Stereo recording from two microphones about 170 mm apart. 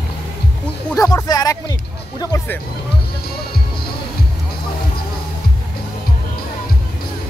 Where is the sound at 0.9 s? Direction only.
20° left (ahead or behind).